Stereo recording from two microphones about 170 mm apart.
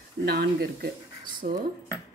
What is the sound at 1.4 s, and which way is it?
Speech, 55° right (ahead or behind).